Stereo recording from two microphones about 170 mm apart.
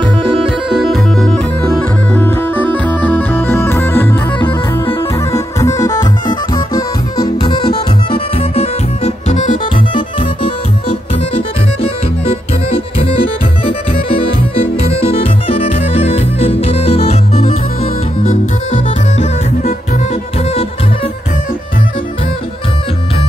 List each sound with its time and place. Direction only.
0.0 s music: 30° right (ahead or behind)
0.7 s music: centre (ahead or behind)
5.3 s music: 20° left (ahead or behind); by 9.6 s 45° left (ahead or behind)
9.8 s music: 30° left (ahead or behind)
11.8 s music: 35° left (ahead or behind)
20.4 s music: 35° left (ahead or behind)